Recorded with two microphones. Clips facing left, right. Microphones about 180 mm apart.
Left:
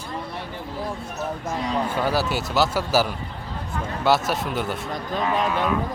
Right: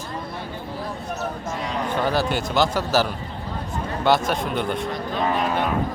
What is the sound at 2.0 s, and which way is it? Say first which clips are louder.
Speech: right 5 dB; 5° left (ahead or behind).